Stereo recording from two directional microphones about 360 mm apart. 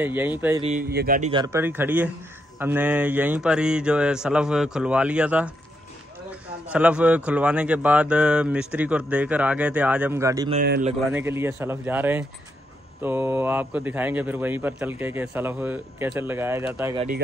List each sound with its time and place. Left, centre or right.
0.0 s a man's voice: centre
0.6 s a man's voice: centre
6.7 s a man's voice: centre
10.6 s speech: right
11.1 s a man's voice: centre